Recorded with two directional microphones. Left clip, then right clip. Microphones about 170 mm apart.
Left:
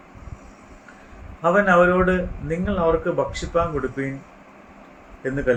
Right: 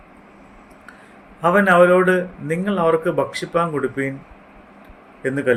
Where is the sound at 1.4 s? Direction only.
55° right (ahead or behind).